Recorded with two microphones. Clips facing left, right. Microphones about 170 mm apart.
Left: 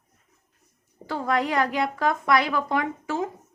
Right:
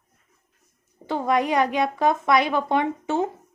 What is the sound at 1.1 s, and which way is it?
A woman's voice, 20° right (ahead or behind).